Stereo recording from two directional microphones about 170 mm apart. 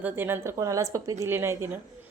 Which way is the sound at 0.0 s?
10° right (ahead or behind).